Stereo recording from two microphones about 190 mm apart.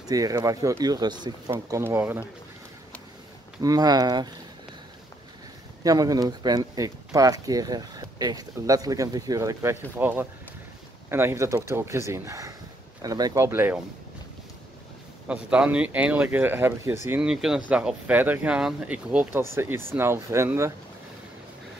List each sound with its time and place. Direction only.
0.0 s speech: 20° right (ahead or behind)
3.6 s speech: 20° right (ahead or behind)
5.9 s speech: 20° right (ahead or behind)
15.2 s speech: 5° right (ahead or behind)